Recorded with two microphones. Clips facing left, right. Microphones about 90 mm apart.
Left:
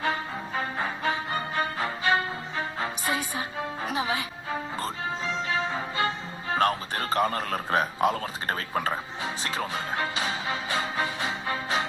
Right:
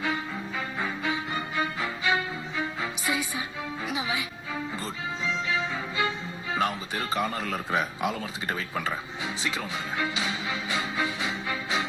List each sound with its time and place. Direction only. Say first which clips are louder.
0.0 s music: left 1 dB; 40° left (ahead or behind)
5.5 s music: left 1 dB; 45° left (ahead or behind)
7.1 s a man's voice: left 4 dB; 50° left (ahead or behind)